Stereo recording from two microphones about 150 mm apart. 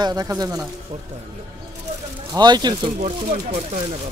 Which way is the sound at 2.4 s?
30° right (ahead or behind).